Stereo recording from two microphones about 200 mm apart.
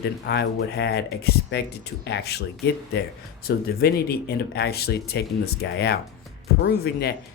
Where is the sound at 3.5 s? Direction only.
50° left (ahead or behind).